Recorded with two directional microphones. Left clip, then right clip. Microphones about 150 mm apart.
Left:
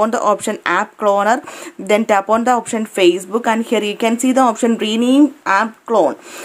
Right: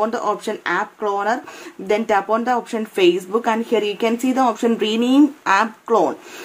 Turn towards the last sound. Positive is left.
turn(degrees=25)  # may be behind; listen again after turning